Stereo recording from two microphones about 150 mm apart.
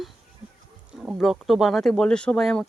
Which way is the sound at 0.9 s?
10° right (ahead or behind).